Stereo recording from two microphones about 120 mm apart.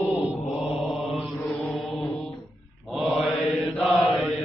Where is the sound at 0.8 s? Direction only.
Centre (ahead or behind).